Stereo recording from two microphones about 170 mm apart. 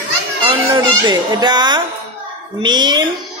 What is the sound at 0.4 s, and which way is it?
A child's voice, 30° right (ahead or behind).